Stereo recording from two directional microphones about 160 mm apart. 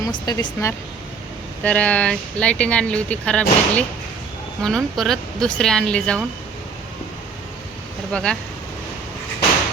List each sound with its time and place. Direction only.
0.0 s speech: 25° left (ahead or behind)
1.6 s speech: 10° left (ahead or behind)
8.1 s speech: 5° left (ahead or behind)